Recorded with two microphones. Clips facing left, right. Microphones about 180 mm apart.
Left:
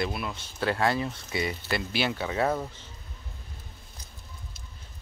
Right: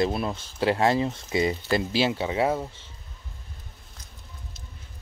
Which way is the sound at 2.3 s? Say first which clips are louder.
Right 2 dB; 10° right (ahead or behind).